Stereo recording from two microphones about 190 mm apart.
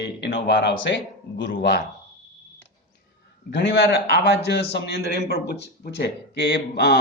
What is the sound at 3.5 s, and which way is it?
A man's voice, 65° left (ahead or behind).